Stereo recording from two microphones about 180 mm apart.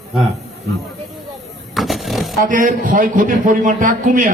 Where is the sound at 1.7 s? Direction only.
Centre (ahead or behind).